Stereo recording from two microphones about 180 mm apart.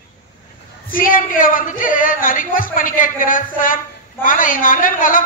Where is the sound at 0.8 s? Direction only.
50° left (ahead or behind).